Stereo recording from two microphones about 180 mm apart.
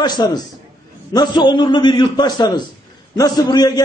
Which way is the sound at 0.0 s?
25° left (ahead or behind).